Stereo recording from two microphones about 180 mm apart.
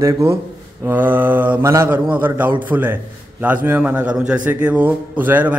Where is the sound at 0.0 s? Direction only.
15° right (ahead or behind).